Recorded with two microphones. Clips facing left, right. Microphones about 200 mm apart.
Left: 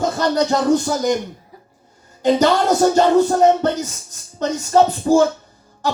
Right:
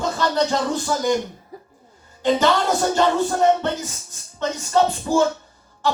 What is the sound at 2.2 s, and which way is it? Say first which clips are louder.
Speech: left 3 dB; 40° left (ahead or behind).